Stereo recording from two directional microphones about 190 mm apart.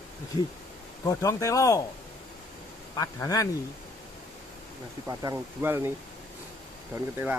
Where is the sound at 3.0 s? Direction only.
20° left (ahead or behind).